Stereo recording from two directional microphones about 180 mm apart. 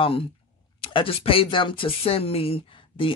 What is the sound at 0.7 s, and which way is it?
Speech, 30° left (ahead or behind).